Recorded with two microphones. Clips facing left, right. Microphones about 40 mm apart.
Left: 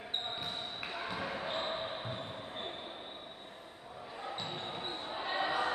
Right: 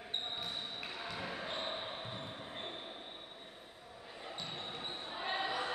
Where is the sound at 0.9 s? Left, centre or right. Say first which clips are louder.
Left 5 dB; left.